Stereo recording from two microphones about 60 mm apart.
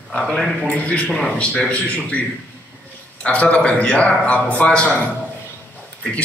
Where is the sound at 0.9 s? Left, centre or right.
Centre.